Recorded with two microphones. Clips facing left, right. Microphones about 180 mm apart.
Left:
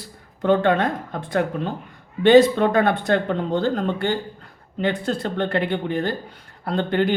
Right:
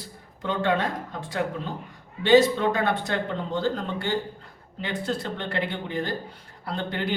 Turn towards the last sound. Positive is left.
turn(degrees=60)  # may be behind; listen again after turning